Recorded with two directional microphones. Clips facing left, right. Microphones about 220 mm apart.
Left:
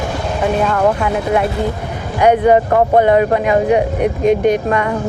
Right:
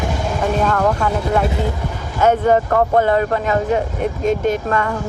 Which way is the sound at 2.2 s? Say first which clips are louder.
Left 4 dB; 15° left (ahead or behind).